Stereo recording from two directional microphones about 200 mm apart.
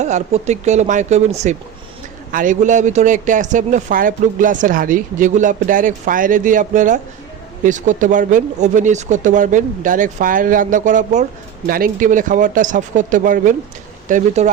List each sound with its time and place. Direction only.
0.0 s speech: 35° right (ahead or behind)